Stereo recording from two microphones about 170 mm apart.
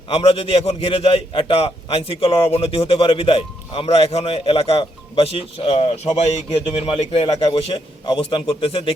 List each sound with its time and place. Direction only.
0.2 s a man's voice: 35° left (ahead or behind)
7.4 s a man's voice: 25° left (ahead or behind)